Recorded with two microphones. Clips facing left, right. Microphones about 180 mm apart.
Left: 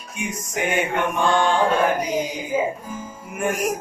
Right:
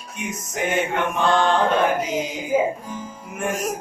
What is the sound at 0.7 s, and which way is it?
Speech, 10° left (ahead or behind).